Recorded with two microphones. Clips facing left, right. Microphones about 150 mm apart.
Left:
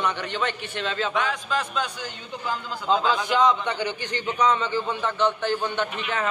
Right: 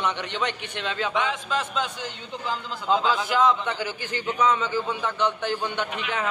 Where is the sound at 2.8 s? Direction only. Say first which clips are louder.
Even; 5° right (ahead or behind).